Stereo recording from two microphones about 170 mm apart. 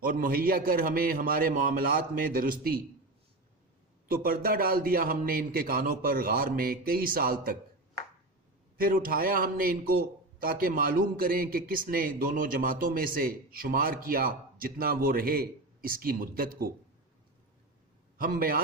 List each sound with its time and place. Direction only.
0.0 s a man's voice: 60° right (ahead or behind)
4.1 s a man's voice: 60° right (ahead or behind)
8.8 s a man's voice: 55° right (ahead or behind)
18.2 s a man's voice: 60° right (ahead or behind)